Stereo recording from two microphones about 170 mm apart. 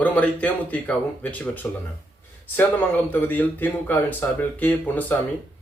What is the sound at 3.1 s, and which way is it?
Speech, 10° left (ahead or behind).